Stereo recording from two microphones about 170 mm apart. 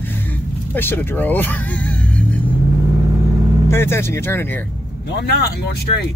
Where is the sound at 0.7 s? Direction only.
10° left (ahead or behind).